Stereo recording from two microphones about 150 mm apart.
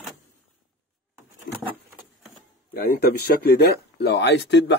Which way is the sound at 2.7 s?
80° left.